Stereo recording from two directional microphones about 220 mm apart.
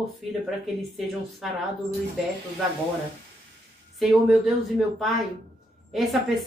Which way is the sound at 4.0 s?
Centre (ahead or behind).